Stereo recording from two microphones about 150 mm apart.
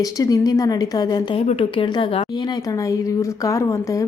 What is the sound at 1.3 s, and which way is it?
Speech, 40° left (ahead or behind).